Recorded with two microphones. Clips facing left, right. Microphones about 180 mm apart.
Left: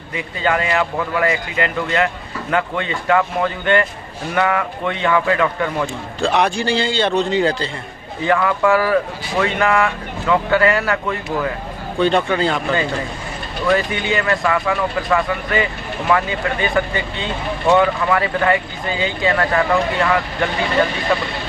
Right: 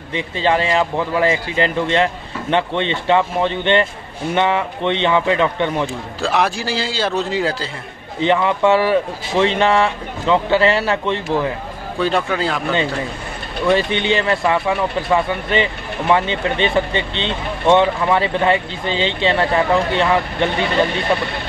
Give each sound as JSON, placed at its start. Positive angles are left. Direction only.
{"t": 0.1, "sound": "a man's voice", "side_deg": -30}
{"t": 6.2, "sound": "a man's voice", "side_deg": 0}
{"t": 8.2, "sound": "a man's voice", "side_deg": -25}
{"t": 12.0, "sound": "a man's voice", "side_deg": 0}
{"t": 13.7, "sound": "a man's voice", "side_deg": -25}